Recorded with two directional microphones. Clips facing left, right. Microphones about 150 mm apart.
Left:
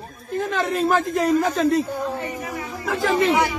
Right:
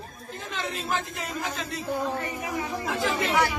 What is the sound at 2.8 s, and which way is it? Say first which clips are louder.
Speech: left 9 dB; 45° left (ahead or behind).